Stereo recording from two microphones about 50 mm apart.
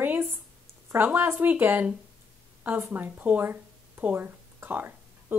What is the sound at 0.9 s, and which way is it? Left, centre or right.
Speech, right.